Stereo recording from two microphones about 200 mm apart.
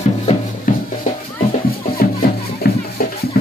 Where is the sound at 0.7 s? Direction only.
40° left (ahead or behind).